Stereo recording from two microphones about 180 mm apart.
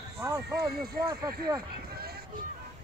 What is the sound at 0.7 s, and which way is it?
Speech, 60° right (ahead or behind).